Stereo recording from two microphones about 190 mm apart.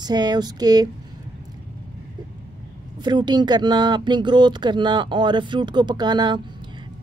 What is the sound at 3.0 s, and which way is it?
Speech, 20° right (ahead or behind).